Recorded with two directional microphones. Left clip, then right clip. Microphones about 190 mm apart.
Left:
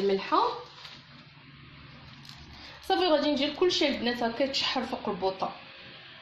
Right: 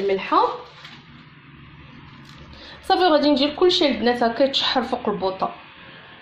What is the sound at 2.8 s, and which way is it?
Speech, 30° right (ahead or behind).